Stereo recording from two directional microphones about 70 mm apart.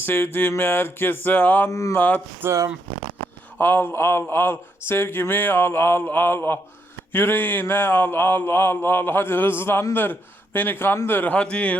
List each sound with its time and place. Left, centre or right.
0.0 s a man's voice: left
1.7 s speech: left
2.0 s a man's voice: left
2.4 s speech: right
3.6 s a sound: left
9.9 s a man's voice: left